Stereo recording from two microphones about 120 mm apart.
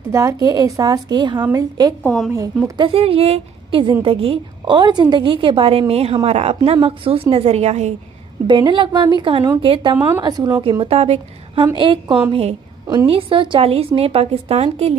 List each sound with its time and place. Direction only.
0.1 s a woman's voice: 25° right (ahead or behind)
2.8 s a woman's voice: 50° right (ahead or behind); by 7.9 s 65° right (ahead or behind)
8.5 s a woman's voice: 45° right (ahead or behind)
10.2 s a woman's voice: 35° right (ahead or behind)
10.6 s a woman's voice: 50° right (ahead or behind)
11.7 s a woman's voice: 45° right (ahead or behind)
12.3 s a woman's voice: 55° right (ahead or behind)